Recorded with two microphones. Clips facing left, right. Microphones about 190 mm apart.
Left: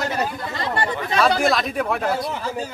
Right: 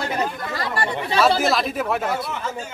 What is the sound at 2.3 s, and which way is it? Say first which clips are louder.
Speech: left 2 dB; 35° left (ahead or behind).